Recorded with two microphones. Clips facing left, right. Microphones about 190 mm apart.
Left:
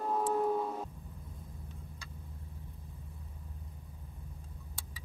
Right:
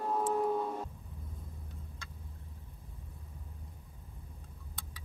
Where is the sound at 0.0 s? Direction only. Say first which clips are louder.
Even; centre (ahead or behind).